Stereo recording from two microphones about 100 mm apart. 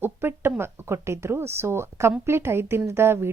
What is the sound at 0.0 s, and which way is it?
A woman's voice, 20° right (ahead or behind).